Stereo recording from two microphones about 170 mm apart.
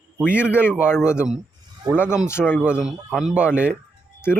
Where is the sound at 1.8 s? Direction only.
25° right (ahead or behind).